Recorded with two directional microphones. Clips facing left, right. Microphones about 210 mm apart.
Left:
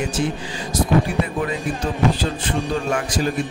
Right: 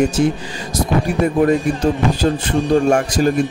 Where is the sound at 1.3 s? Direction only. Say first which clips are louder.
Right 9 dB; 45° right (ahead or behind).